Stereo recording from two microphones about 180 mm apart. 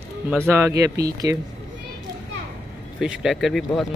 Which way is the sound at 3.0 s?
Centre (ahead or behind).